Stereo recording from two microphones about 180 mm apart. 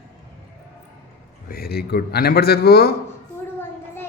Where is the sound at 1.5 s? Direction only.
60° left (ahead or behind).